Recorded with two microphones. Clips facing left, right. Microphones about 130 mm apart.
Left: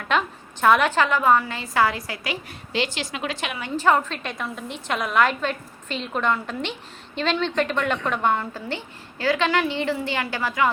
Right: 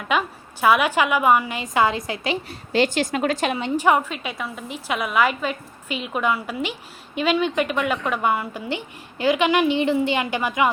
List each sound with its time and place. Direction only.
0.1 s a woman's voice: 5° right (ahead or behind); by 2.6 s 25° right (ahead or behind)
2.7 s a woman's voice: 45° right (ahead or behind)
3.8 s a woman's voice: 15° right (ahead or behind)